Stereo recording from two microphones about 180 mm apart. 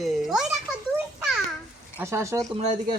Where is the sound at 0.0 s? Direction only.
Centre (ahead or behind).